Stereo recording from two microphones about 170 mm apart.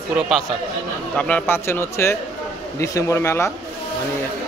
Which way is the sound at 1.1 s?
5° left (ahead or behind).